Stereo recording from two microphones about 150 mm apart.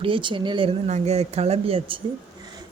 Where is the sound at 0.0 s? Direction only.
35° right (ahead or behind).